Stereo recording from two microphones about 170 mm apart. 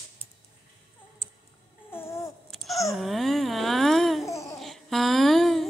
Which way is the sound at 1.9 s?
15° left (ahead or behind).